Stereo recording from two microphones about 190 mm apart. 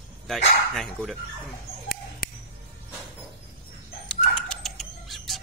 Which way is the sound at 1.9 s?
50° left (ahead or behind).